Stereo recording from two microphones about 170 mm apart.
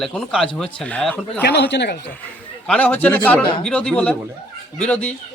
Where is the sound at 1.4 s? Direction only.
85° left.